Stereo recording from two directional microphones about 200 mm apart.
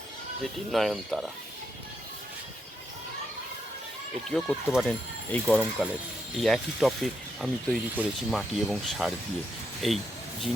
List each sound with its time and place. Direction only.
0.7 s speech: centre (ahead or behind)
4.3 s speech: centre (ahead or behind)